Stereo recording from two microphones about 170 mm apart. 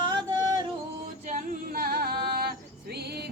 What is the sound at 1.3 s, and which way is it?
Singing, 55° right (ahead or behind).